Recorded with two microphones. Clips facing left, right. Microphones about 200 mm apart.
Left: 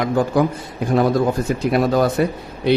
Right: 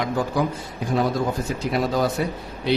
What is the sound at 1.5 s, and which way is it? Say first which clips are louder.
Speech: left 7 dB; 55° left (ahead or behind).